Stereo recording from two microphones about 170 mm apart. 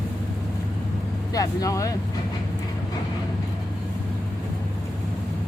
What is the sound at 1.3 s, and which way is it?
Speech, 20° left (ahead or behind).